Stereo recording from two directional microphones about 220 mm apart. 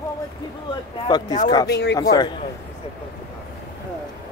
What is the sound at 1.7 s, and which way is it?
Speech, 50° left (ahead or behind).